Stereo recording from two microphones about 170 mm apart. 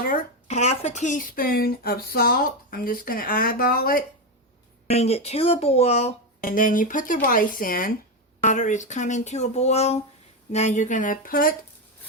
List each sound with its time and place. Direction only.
0.0 s speech: 55° left (ahead or behind)
4.9 s speech: 40° left (ahead or behind)
6.4 s speech: 55° left (ahead or behind)
8.4 s speech: 45° left (ahead or behind)